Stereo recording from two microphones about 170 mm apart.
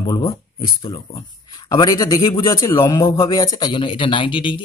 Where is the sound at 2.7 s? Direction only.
30° left (ahead or behind).